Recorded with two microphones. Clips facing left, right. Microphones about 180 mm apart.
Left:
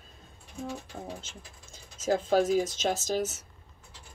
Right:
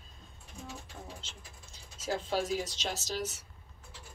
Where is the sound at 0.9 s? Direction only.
50° left (ahead or behind).